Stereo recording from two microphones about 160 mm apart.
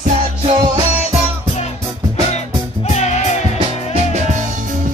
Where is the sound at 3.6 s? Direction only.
45° right (ahead or behind).